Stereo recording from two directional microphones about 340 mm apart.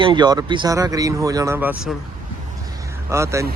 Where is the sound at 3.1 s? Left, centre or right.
Centre.